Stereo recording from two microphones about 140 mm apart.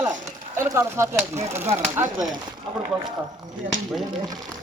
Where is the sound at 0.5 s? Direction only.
20° right (ahead or behind).